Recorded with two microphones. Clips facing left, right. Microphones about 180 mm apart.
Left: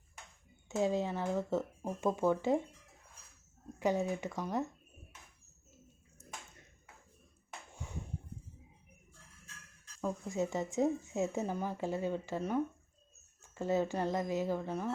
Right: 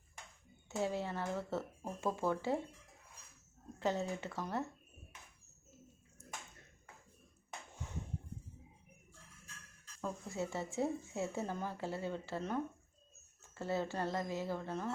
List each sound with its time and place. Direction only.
0.8 s speech: 15° left (ahead or behind)
3.8 s speech: 15° left (ahead or behind)
10.0 s speech: 15° left (ahead or behind)